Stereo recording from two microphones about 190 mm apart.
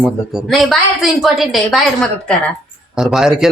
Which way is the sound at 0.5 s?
Centre (ahead or behind).